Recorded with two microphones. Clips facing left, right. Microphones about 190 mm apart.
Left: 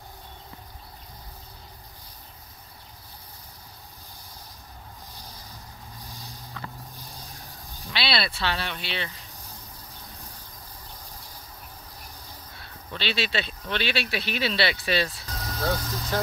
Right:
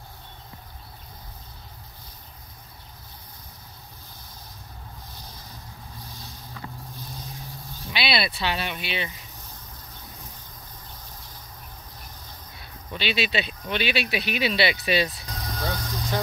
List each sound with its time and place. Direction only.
7.9 s speech: 15° right (ahead or behind)
12.5 s speech: 15° right (ahead or behind)
15.5 s vehicle: centre (ahead or behind)